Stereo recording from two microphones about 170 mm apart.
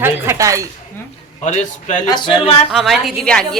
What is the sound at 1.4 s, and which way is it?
Speech, 40° left (ahead or behind).